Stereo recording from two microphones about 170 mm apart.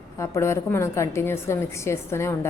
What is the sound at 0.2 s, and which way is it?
A woman's voice, 15° left (ahead or behind).